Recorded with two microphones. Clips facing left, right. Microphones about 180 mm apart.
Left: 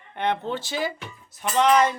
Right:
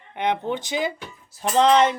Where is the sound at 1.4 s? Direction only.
30° right (ahead or behind).